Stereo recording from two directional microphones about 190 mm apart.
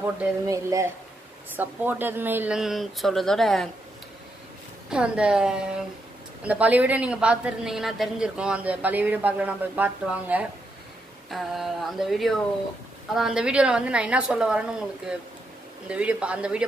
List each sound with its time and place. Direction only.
0.0 s a woman's voice: 15° right (ahead or behind)
4.8 s a woman's voice: 5° right (ahead or behind)